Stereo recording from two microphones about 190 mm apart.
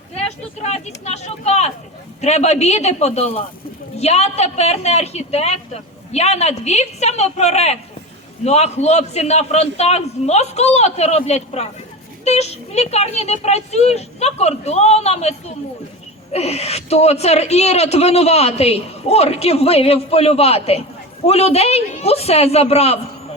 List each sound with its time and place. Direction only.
0.6 s a man's voice: 35° left (ahead or behind)